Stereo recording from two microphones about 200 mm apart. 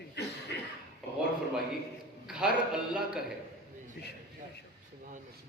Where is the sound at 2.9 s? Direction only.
5° right (ahead or behind).